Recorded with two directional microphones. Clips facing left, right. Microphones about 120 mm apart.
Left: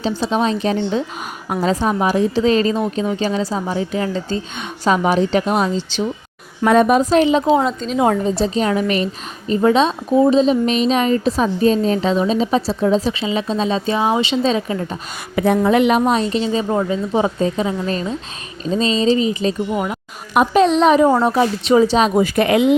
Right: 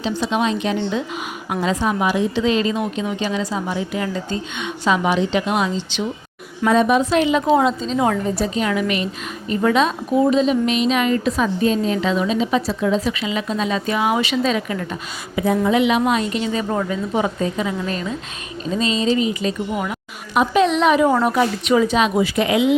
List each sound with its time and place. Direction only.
0.0 s a woman's voice: 35° left (ahead or behind)
6.7 s a woman's voice: 45° left (ahead or behind); by 7.5 s 30° left (ahead or behind)
7.6 s a woman's voice: centre (ahead or behind)
7.9 s a woman's voice: 25° left (ahead or behind)
15.4 s a woman's voice: 55° left (ahead or behind); by 20.0 s 25° left (ahead or behind)
20.3 s a woman's voice: 50° left (ahead or behind)
20.6 s a woman's voice: 35° left (ahead or behind); by 22.7 s 50° left (ahead or behind)